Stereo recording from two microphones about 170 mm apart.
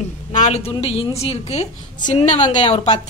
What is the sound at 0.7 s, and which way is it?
Speech, 35° left (ahead or behind).